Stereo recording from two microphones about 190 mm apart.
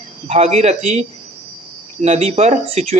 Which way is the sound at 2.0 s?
35° right (ahead or behind).